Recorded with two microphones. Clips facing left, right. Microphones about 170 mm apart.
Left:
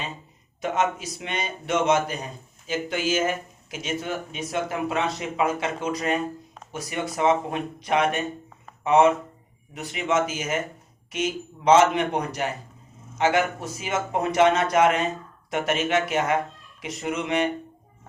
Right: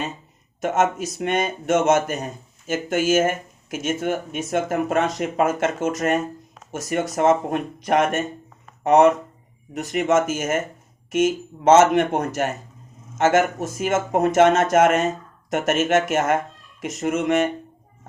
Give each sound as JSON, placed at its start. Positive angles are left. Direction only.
{"t": 0.6, "sound": "speech", "side_deg": -45}